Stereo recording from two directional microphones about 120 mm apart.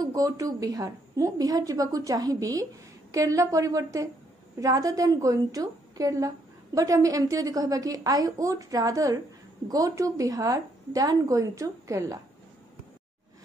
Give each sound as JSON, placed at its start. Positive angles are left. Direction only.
{"t": 0.0, "sound": "a woman's voice", "side_deg": -30}